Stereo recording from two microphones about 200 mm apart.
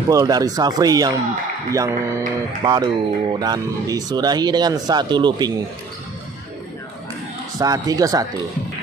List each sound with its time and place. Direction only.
0.1 s speech: 20° right (ahead or behind)
7.5 s speech: 20° right (ahead or behind)